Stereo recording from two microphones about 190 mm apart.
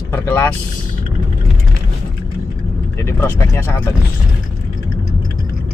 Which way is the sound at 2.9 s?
10° left (ahead or behind).